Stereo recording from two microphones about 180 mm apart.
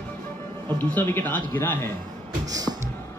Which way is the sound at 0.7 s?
10° left (ahead or behind).